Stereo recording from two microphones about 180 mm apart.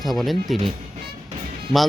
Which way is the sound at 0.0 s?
Centre (ahead or behind).